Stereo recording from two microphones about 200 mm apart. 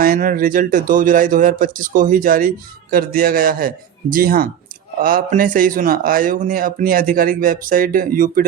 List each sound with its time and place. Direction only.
0.0 s speech: 45° right (ahead or behind)